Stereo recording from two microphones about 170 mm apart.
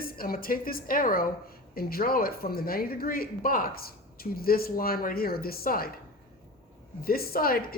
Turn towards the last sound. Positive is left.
turn(degrees=60)  # may be behind; listen again after turning